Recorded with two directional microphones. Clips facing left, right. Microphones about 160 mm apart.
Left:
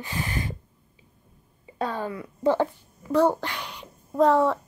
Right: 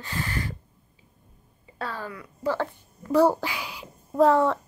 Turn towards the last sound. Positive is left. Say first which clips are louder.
# even
turn(degrees=0)  # may be behind; listen again after turning